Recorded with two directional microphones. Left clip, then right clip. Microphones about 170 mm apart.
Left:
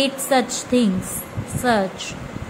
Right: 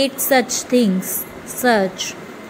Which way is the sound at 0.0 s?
15° right (ahead or behind).